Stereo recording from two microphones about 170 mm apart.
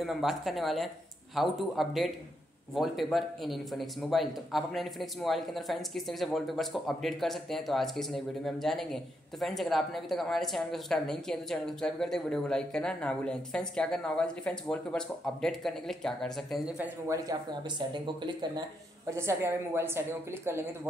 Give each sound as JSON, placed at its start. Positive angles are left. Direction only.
{"t": 0.0, "sound": "speech", "side_deg": 0}
{"t": 17.1, "sound": "speech", "side_deg": -25}